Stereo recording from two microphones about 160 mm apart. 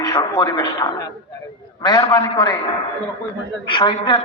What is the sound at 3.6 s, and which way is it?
Speech, 30° left (ahead or behind).